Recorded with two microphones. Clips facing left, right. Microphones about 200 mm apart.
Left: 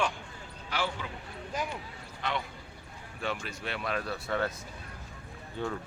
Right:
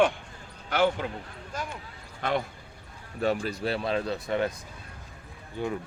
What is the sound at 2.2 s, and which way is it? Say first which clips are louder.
Speech: right 6 dB; 50° right (ahead or behind).